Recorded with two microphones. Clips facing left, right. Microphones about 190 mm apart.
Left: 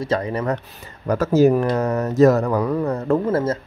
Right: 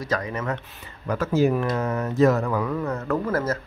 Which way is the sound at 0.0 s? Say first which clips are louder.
Left 5 dB; 30° left (ahead or behind).